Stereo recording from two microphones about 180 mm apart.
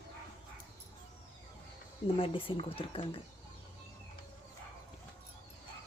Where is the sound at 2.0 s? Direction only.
30° left (ahead or behind).